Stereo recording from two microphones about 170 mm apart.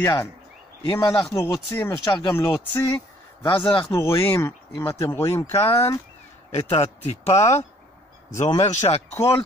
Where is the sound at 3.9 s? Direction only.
15° left (ahead or behind).